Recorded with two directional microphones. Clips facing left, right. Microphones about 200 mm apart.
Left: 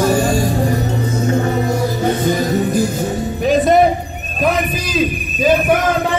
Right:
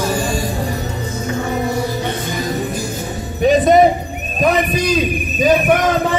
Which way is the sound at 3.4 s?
Centre (ahead or behind).